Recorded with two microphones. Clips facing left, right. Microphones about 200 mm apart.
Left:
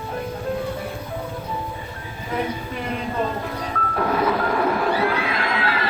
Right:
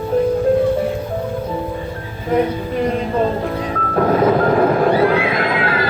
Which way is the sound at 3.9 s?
45° right (ahead or behind).